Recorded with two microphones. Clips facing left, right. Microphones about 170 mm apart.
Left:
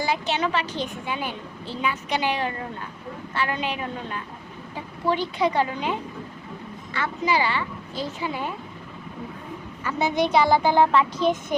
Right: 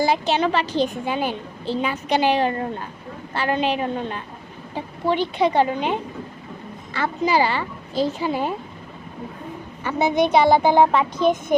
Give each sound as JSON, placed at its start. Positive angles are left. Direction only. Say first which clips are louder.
{"t": 0.0, "sound": "a woman's voice", "louder": "right 5 dB", "side_deg": -35}
{"t": 6.9, "sound": "a woman's voice", "louder": "right 4 dB", "side_deg": -35}
{"t": 9.8, "sound": "speech", "louder": "right 4 dB", "side_deg": -20}
{"t": 11.2, "sound": "a woman's voice", "louder": "right 6 dB", "side_deg": -55}